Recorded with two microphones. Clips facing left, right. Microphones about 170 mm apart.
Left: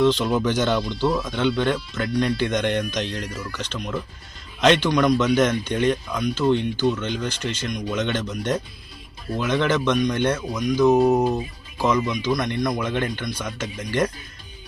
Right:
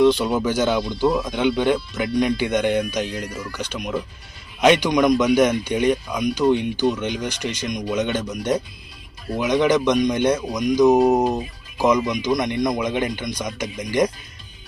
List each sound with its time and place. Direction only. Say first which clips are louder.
0.0 s speech: right 2 dB; 10° right (ahead or behind)